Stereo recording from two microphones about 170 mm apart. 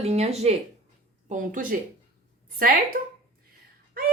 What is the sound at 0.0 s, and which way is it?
Speech, 40° right (ahead or behind).